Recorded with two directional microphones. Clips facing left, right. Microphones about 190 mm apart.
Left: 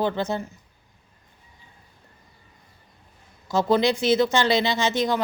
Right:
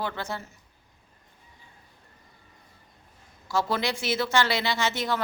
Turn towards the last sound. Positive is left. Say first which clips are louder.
# left 5 dB
turn(degrees=15)  # may be behind; listen again after turning